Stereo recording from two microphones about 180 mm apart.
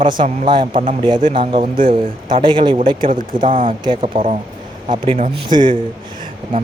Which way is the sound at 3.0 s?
50° right (ahead or behind).